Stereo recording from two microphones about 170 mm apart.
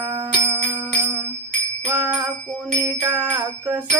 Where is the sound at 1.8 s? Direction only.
10° right (ahead or behind).